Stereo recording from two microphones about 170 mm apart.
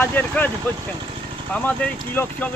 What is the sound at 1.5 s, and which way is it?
Speech, 10° left (ahead or behind).